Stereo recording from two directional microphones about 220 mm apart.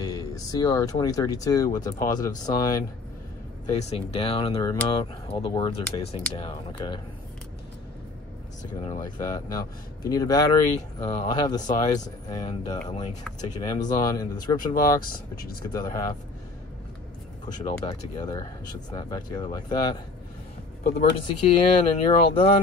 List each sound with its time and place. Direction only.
0.0 s speech: 15° left (ahead or behind)
8.8 s speech: 20° left (ahead or behind)
17.5 s speech: 25° left (ahead or behind)
20.8 s speech: 30° left (ahead or behind)